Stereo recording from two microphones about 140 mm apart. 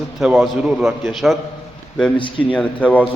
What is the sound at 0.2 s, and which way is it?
A man's voice, centre (ahead or behind).